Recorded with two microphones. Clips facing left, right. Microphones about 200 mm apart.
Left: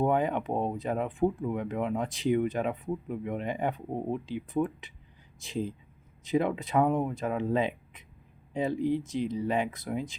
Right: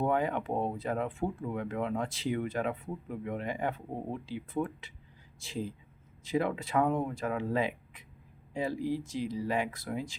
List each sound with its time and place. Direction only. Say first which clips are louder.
0.0 s speech: left 3 dB; 20° left (ahead or behind)